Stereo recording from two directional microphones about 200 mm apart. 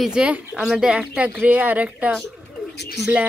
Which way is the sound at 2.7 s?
55° left (ahead or behind).